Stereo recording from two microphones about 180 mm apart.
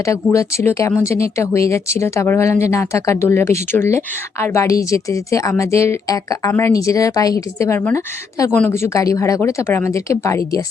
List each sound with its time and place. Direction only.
0.0 s speech: 15° left (ahead or behind)